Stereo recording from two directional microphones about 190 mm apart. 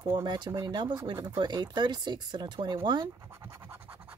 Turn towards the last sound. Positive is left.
turn(degrees=-10)  # may be behind; listen again after turning